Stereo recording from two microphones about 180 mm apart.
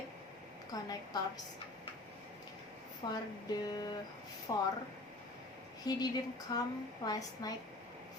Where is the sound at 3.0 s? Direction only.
25° left (ahead or behind).